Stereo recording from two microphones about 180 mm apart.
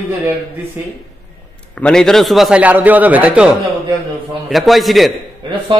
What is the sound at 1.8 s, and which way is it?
A man's voice, 5° left (ahead or behind).